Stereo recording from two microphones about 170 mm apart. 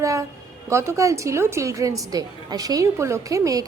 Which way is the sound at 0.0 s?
20° right (ahead or behind).